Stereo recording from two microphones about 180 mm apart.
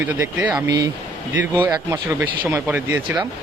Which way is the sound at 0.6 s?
20° right (ahead or behind).